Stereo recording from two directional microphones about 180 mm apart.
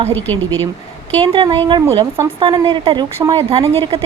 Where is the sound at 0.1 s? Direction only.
10° left (ahead or behind).